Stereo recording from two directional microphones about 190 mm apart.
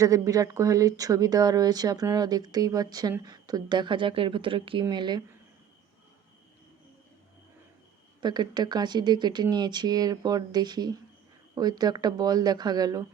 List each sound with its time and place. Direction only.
0.0 s speech: 20° right (ahead or behind)
8.2 s speech: 20° right (ahead or behind)